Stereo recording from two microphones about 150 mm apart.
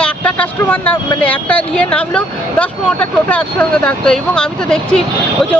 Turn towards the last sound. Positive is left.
turn(degrees=5)  # may be behind; listen again after turning